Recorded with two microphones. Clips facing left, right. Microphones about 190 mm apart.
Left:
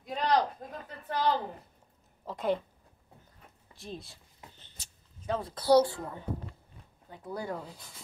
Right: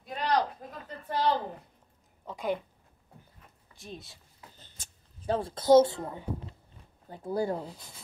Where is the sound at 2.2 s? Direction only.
Centre (ahead or behind).